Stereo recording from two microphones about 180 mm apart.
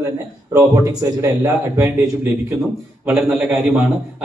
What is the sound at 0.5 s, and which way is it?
A man's voice, 15° right (ahead or behind).